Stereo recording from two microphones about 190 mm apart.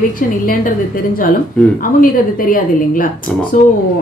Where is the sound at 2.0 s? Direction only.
45° left (ahead or behind).